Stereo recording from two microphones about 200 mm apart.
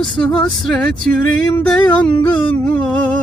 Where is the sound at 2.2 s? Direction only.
5° left (ahead or behind).